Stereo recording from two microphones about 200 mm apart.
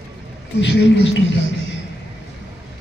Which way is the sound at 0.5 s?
65° left (ahead or behind).